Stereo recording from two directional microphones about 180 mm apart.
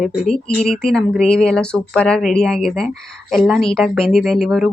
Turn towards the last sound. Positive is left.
turn(degrees=0)  # may be behind; listen again after turning